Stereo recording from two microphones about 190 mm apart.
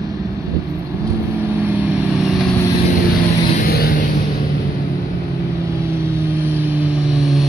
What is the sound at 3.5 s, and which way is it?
Vehicle, 55° left (ahead or behind).